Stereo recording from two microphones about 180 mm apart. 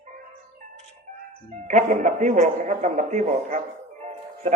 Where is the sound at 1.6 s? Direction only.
45° right (ahead or behind).